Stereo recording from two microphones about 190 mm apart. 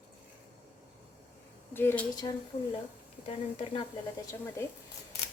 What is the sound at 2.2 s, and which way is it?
Speech, 20° left (ahead or behind).